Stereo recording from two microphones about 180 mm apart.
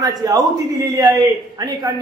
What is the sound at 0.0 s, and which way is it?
Speech, 20° right (ahead or behind).